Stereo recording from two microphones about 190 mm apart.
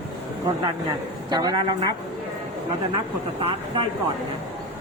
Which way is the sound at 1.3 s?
20° right (ahead or behind).